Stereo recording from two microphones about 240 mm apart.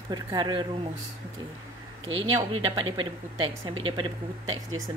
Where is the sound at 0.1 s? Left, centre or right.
Centre.